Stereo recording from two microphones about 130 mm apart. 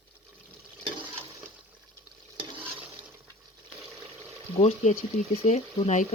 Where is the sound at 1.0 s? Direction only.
15° right (ahead or behind).